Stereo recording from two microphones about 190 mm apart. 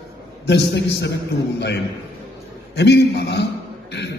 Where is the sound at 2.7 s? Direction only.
60° left (ahead or behind).